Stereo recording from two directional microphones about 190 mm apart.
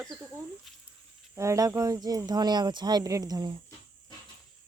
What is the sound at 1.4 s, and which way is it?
Speech, 15° right (ahead or behind).